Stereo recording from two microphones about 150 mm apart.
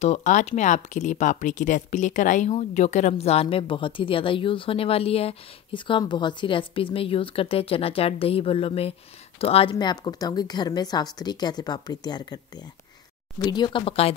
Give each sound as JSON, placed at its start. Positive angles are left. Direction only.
{"t": 0.0, "sound": "speech", "side_deg": 50}
{"t": 13.4, "sound": "speech", "side_deg": 30}